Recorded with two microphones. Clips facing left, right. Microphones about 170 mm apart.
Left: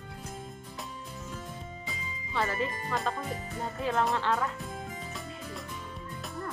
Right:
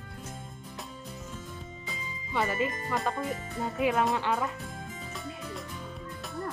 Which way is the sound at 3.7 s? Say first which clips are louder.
Right 2 dB; 10° right (ahead or behind).